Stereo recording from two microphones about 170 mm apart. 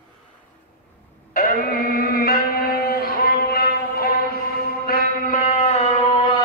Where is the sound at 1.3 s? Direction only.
60° left (ahead or behind).